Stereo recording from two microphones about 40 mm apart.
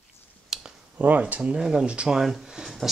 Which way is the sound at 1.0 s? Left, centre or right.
Right.